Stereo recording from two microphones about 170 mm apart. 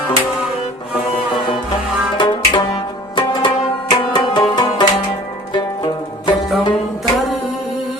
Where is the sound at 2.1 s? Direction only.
25° left (ahead or behind).